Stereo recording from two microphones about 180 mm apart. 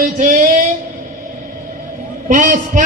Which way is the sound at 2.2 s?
45° right (ahead or behind).